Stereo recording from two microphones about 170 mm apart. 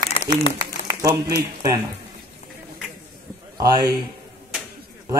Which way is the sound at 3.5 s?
20° right (ahead or behind).